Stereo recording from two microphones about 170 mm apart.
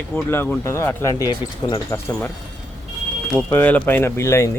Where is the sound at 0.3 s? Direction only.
10° left (ahead or behind).